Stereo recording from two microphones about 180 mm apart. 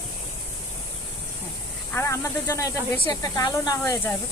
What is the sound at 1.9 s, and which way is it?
Speech, 15° left (ahead or behind).